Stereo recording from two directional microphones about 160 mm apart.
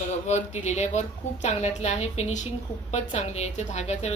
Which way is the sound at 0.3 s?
45° left (ahead or behind).